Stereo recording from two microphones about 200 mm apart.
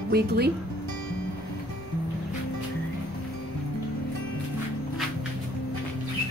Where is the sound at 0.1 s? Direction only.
50° right (ahead or behind).